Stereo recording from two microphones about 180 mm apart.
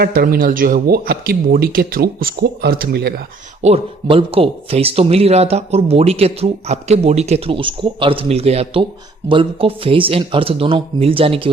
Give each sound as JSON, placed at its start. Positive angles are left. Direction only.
{"t": 0.0, "sound": "a man's voice", "side_deg": -55}
{"t": 3.6, "sound": "speech", "side_deg": -35}